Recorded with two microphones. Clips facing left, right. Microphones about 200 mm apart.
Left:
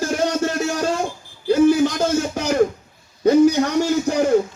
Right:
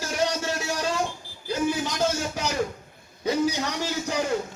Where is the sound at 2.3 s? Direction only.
50° left (ahead or behind).